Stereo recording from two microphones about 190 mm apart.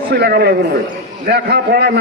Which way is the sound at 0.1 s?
55° right (ahead or behind).